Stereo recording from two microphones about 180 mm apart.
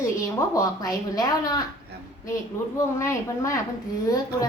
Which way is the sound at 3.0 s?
15° left (ahead or behind).